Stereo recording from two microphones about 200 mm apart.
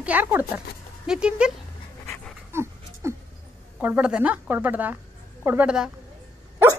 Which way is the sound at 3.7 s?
10° right (ahead or behind).